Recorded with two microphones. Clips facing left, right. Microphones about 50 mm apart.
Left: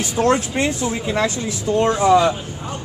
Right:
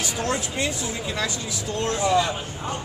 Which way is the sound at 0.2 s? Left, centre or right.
Left.